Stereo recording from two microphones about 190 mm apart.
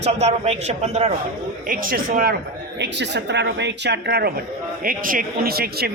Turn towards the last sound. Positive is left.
turn(degrees=-55)  # may be behind; listen again after turning